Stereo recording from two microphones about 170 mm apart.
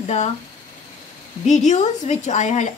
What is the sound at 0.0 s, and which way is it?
Speech, 40° left (ahead or behind).